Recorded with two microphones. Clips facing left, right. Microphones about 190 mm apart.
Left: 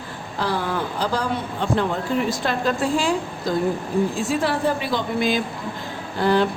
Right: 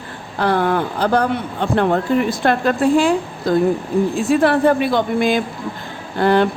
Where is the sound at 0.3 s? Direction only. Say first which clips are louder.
Right 7 dB; 60° right (ahead or behind).